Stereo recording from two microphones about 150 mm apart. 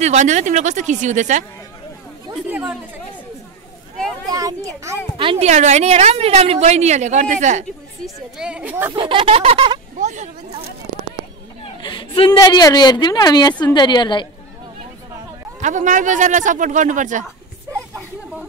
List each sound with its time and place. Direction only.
0.0 s a woman's voice: 50° right (ahead or behind)
4.3 s a child's voice: 25° right (ahead or behind)
5.1 s a woman's voice: 35° right (ahead or behind); by 7.6 s 55° right (ahead or behind)
8.0 s a woman's voice: 5° right (ahead or behind)
8.9 s speech: 35° right (ahead or behind)
9.9 s a sound: 55° right (ahead or behind)
11.6 s a sound: 35° left (ahead or behind)
12.4 s a woman's voice: 25° left (ahead or behind)
15.6 s speech: 55° right (ahead or behind)